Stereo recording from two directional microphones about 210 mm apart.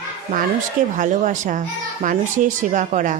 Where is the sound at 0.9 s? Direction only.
35° right (ahead or behind).